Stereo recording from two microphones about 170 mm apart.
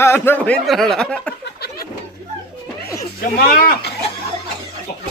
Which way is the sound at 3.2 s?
60° left (ahead or behind).